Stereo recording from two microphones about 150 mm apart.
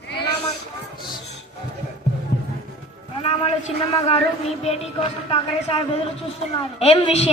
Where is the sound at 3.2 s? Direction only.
40° left (ahead or behind).